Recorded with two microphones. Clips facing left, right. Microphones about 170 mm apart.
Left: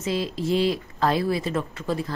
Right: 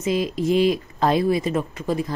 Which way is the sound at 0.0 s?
15° right (ahead or behind).